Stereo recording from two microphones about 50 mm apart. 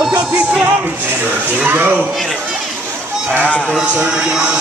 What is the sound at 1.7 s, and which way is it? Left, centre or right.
Speech, right.